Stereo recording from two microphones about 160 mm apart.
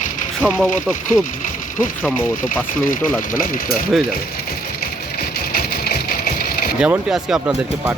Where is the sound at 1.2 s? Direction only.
55° left (ahead or behind).